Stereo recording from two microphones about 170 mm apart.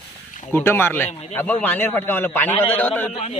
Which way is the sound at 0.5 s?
15° left (ahead or behind).